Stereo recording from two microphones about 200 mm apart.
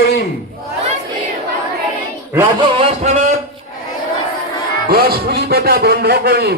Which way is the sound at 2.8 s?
30° right (ahead or behind).